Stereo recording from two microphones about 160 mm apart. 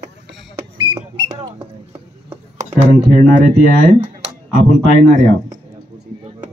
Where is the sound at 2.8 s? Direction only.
55° right (ahead or behind).